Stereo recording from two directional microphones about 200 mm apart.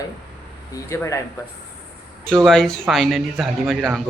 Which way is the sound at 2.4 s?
Centre (ahead or behind).